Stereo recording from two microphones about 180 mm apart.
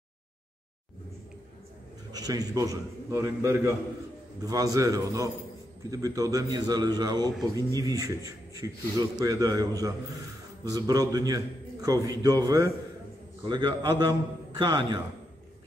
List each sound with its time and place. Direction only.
2.1 s speech: 20° right (ahead or behind)